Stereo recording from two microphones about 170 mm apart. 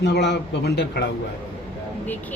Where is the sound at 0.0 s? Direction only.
85° left.